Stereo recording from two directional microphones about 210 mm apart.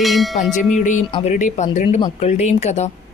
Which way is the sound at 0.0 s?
Centre (ahead or behind).